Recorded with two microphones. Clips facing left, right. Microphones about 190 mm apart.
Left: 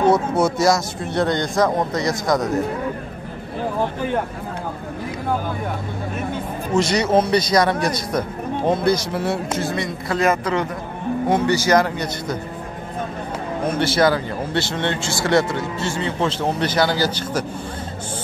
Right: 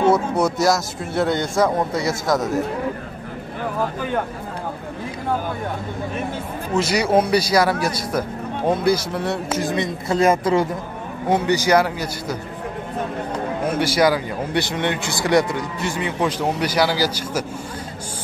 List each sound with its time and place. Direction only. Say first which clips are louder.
0.1 s a man's voice: left 1 dB; centre (ahead or behind)
6.7 s a man's voice: left 1 dB; 5° right (ahead or behind)
9.6 s a man's voice: right 1 dB; 20° right (ahead or behind)
11.2 s speech: right 1 dB; 15° right (ahead or behind)
13.7 s speech: even; 10° right (ahead or behind)